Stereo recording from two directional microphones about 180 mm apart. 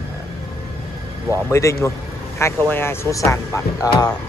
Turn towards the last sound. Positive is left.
turn(degrees=20)  # may be behind; listen again after turning